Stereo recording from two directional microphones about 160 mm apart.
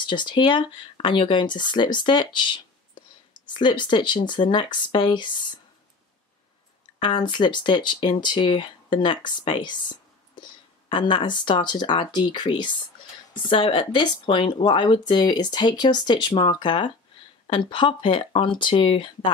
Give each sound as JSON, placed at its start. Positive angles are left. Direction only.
{"t": 0.0, "sound": "speech", "side_deg": 30}
{"t": 7.0, "sound": "speech", "side_deg": 30}